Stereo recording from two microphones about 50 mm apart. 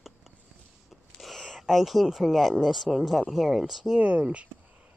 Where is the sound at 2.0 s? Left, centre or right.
Centre.